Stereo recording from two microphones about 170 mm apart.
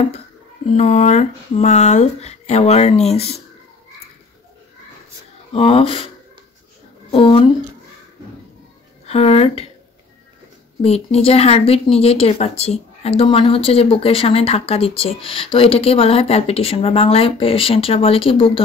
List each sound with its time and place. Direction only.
0.7 s speech: 40° left (ahead or behind)
5.5 s speech: 35° left (ahead or behind)
9.0 s speech: 35° left (ahead or behind)
10.8 s speech: 35° left (ahead or behind)